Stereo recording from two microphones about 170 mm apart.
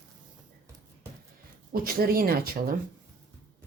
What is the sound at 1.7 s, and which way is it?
Speech, 60° right (ahead or behind).